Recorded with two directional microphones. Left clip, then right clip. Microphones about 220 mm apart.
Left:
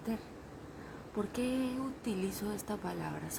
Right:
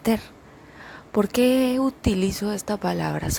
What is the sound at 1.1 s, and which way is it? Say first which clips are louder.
Speech: right 16 dB; 45° right (ahead or behind).